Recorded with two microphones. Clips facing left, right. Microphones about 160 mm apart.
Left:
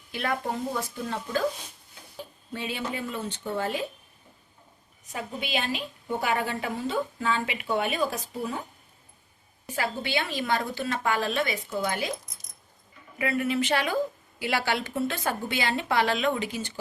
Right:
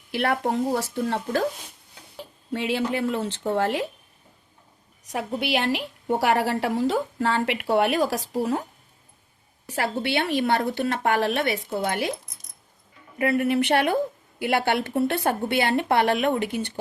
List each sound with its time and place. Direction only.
0.1 s a woman's voice: 70° right (ahead or behind)
2.5 s speech: 90° right
5.0 s a woman's voice: 75° right (ahead or behind)
9.6 s a woman's voice: 70° right (ahead or behind)